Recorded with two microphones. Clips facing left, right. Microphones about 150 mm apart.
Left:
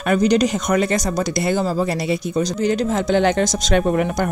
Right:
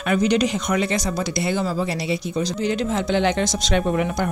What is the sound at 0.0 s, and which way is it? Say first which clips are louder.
Speech: left 3 dB; 40° left (ahead or behind).